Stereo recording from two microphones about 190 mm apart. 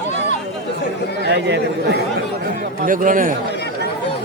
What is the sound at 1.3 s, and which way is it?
Speech, 60° right (ahead or behind).